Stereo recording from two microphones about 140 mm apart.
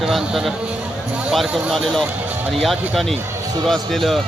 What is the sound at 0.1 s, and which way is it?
A man's voice, centre (ahead or behind).